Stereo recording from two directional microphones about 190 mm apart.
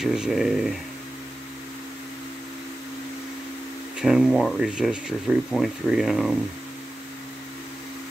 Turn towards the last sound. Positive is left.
turn(degrees=0)  # may be behind; listen again after turning